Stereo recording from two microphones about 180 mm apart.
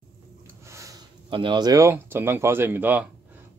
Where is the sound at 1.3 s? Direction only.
25° right (ahead or behind); by 3.1 s 10° right (ahead or behind).